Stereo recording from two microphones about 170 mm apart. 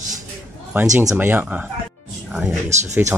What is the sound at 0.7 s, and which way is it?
Speech, 15° right (ahead or behind).